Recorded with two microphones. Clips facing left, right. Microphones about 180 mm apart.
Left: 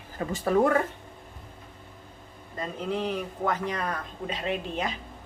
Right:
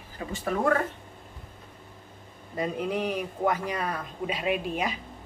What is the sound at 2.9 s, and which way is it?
Speech, 15° right (ahead or behind).